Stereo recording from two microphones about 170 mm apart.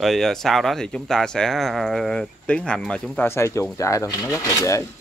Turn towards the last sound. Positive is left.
turn(degrees=20)  # may be behind; listen again after turning